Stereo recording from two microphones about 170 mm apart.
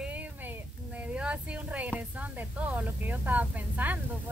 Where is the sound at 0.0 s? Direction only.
10° right (ahead or behind).